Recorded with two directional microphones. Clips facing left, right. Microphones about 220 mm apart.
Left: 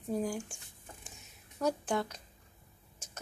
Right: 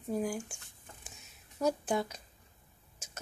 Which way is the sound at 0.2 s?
5° right (ahead or behind).